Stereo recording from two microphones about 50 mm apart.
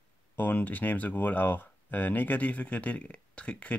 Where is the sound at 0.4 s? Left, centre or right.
Left.